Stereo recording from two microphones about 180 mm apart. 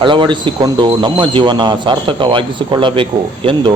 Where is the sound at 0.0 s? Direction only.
25° right (ahead or behind).